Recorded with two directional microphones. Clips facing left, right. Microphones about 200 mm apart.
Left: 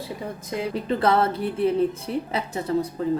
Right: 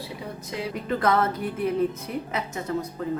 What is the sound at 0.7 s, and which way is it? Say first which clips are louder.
A woman's voice: left 2 dB; 30° left (ahead or behind).